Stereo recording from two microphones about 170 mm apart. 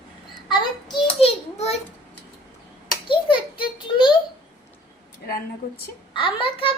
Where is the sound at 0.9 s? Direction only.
35° left (ahead or behind).